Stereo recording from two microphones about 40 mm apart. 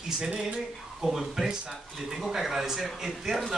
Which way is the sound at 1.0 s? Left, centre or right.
Centre.